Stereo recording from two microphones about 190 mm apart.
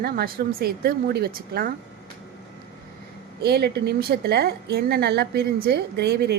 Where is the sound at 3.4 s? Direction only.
55° right (ahead or behind).